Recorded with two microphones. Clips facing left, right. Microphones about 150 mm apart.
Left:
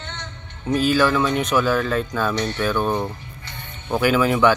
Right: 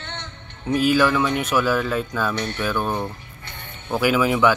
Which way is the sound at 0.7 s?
10° right (ahead or behind).